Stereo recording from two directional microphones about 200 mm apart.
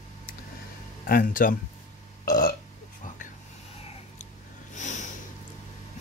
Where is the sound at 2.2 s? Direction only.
45° left (ahead or behind).